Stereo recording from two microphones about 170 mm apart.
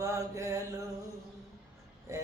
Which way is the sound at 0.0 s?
20° right (ahead or behind).